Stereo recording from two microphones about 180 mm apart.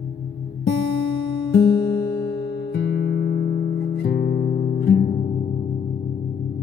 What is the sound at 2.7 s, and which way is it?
Music, 65° left (ahead or behind).